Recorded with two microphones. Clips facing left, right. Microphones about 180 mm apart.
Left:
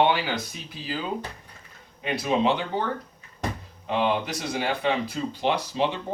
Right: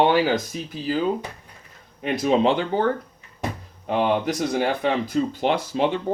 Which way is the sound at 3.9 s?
50° right (ahead or behind).